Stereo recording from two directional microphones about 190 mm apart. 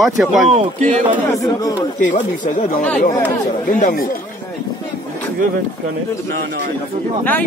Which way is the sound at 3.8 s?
50° left (ahead or behind).